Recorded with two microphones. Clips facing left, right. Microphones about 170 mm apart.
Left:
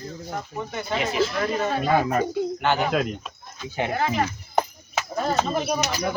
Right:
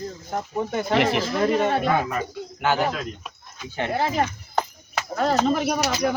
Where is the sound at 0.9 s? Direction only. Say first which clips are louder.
Right 6 dB; 70° right (ahead or behind).